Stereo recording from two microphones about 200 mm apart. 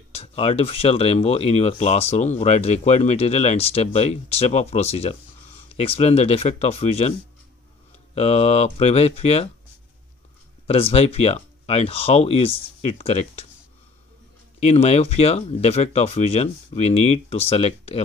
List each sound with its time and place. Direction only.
0.1 s speech: 30° left (ahead or behind)
10.7 s speech: 30° left (ahead or behind)
14.6 s speech: 30° left (ahead or behind)